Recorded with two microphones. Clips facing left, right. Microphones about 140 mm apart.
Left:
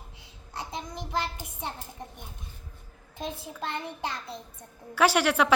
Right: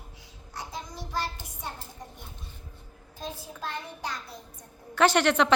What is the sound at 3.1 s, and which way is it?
A child's voice, 25° left (ahead or behind).